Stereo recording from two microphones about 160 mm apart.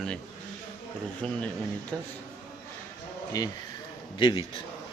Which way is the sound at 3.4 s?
25° left (ahead or behind).